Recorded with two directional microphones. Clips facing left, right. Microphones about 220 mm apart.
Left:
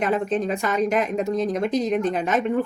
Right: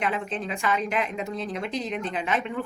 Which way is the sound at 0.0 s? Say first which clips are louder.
Left 7 dB; 40° left (ahead or behind).